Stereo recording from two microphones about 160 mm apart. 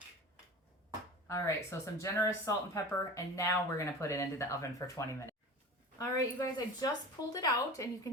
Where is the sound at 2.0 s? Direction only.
20° left (ahead or behind).